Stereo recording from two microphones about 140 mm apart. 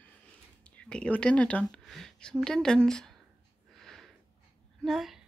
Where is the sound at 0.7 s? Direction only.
10° left (ahead or behind).